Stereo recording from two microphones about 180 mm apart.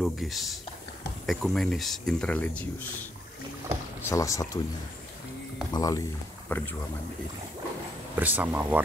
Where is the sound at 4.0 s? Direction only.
15° left (ahead or behind).